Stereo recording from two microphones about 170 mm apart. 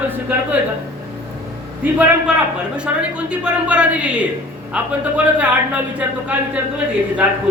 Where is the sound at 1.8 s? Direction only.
5° right (ahead or behind).